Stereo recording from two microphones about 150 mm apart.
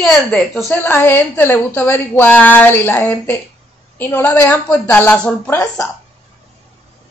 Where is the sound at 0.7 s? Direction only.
15° left (ahead or behind).